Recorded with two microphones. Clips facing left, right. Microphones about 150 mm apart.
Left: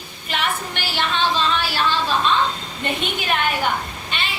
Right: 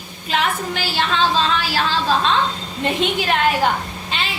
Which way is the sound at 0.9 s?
90° right.